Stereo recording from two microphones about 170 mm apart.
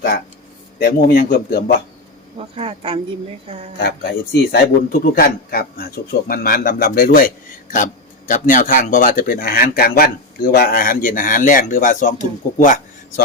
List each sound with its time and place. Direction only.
0.8 s a man's voice: 70° left (ahead or behind)
2.6 s a woman's voice: 30° right (ahead or behind)
3.8 s a man's voice: 70° left (ahead or behind); by 13.2 s 50° left (ahead or behind)